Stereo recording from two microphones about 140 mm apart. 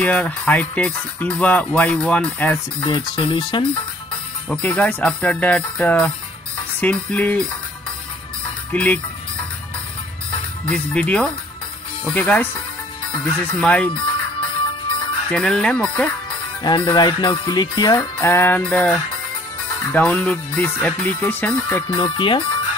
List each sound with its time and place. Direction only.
0.0 s speech: 10° left (ahead or behind)
2.8 s speech: 35° left (ahead or behind)
4.5 s speech: 10° left (ahead or behind)
8.7 s speech: 10° left (ahead or behind)
10.6 s speech: 10° left (ahead or behind)
15.3 s speech: 5° left (ahead or behind)
16.3 s music: 35° left (ahead or behind)
18.1 s speech: 15° left (ahead or behind)
21.9 s speech: 35° left (ahead or behind)